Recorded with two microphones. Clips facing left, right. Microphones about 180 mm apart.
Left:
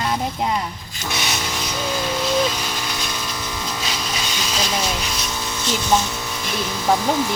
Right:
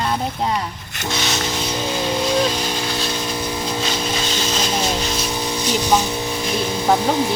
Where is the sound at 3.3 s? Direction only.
30° right (ahead or behind).